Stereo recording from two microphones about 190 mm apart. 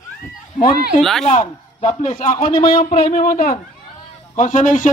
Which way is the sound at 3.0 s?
50° left (ahead or behind).